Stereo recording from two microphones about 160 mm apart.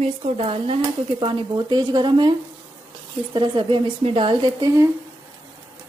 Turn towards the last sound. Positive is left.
turn(degrees=-20)  # may be behind; listen again after turning